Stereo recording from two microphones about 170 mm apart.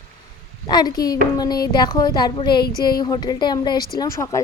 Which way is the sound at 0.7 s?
25° left (ahead or behind).